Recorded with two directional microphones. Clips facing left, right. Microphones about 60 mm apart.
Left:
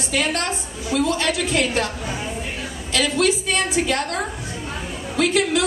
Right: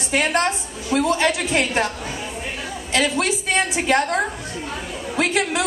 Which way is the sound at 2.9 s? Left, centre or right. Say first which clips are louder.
Left 1 dB; right.